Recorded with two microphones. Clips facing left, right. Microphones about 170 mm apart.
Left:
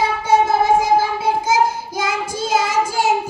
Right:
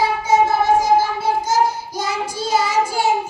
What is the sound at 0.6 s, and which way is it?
Child singing, 55° left (ahead or behind).